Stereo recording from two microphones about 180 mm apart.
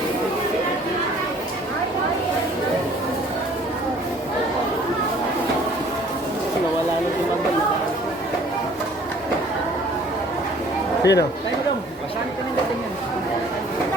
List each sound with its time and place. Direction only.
11.0 s speech: 70° left (ahead or behind)